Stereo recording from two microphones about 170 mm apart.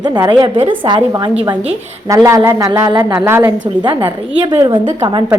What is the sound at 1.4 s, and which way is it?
Speech, 35° right (ahead or behind).